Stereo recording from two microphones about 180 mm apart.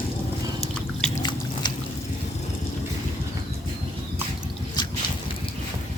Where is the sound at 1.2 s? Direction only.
25° left (ahead or behind).